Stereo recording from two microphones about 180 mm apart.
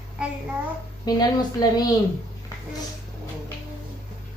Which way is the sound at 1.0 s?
20° left (ahead or behind).